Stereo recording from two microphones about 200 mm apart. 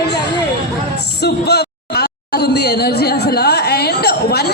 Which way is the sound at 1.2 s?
55° left (ahead or behind).